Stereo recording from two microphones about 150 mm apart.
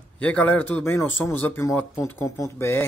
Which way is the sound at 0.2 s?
10° left (ahead or behind).